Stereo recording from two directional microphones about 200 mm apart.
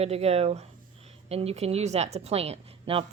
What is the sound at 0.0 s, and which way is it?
A woman's voice, 30° right (ahead or behind).